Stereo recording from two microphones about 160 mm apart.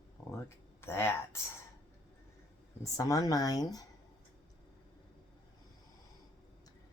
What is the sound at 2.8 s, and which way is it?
Speech, 20° left (ahead or behind).